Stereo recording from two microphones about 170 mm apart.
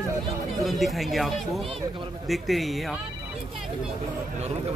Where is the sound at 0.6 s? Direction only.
Centre (ahead or behind).